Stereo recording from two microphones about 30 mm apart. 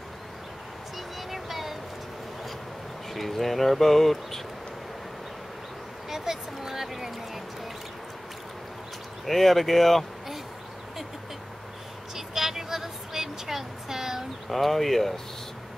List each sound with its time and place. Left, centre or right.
0.9 s music: centre
3.1 s speech: centre
6.0 s a sound: centre
9.2 s speech: centre
12.2 s a sound: centre
14.5 s speech: centre